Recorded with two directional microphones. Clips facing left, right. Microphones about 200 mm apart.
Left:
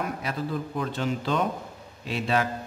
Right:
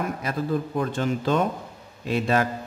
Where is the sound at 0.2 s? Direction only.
45° right (ahead or behind).